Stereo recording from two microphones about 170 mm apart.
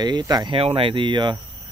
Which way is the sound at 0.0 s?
25° right (ahead or behind).